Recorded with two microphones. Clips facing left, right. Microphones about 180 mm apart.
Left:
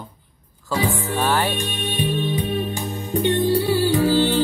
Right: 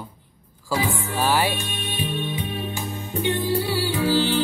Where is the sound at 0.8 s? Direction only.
35° left (ahead or behind).